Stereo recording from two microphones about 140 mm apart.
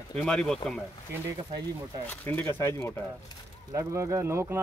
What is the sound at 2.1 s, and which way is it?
Speech, 10° left (ahead or behind).